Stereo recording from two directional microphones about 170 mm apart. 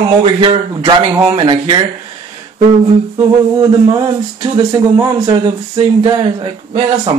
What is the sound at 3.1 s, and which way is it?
Speech, 20° right (ahead or behind).